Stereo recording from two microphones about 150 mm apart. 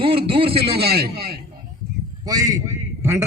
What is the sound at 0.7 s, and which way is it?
Speech, 90° right.